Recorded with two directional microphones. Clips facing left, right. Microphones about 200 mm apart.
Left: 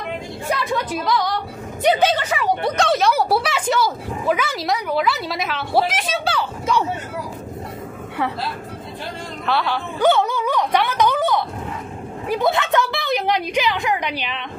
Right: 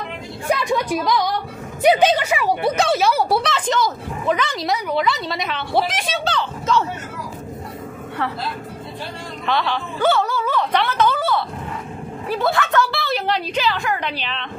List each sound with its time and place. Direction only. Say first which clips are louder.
0.5 s speech: right 3 dB; 15° right (ahead or behind); by 6.9 s 10° left (ahead or behind)
9.5 s a sound: even; 10° left (ahead or behind)
12.3 s a woman's voice: left 1 dB; 20° left (ahead or behind)